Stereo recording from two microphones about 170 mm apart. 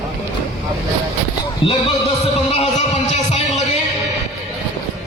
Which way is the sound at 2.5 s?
40° left (ahead or behind).